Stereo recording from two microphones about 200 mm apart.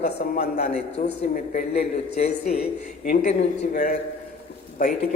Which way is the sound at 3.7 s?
40° left (ahead or behind).